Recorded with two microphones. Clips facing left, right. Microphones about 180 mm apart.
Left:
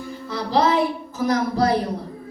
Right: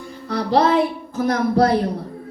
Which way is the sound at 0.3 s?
60° right (ahead or behind).